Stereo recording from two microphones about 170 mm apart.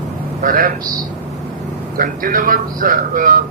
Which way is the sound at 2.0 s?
55° right (ahead or behind).